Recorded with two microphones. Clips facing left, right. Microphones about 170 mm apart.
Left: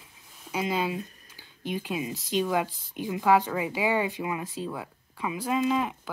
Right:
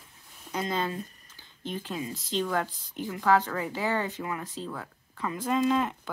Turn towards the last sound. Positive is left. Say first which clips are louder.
# right 1 dB
turn(degrees=5)  # may be behind; listen again after turning